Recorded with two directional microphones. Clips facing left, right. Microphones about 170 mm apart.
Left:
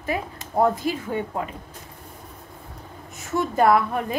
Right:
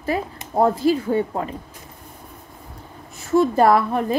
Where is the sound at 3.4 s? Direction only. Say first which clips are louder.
Right 3 dB; 35° right (ahead or behind).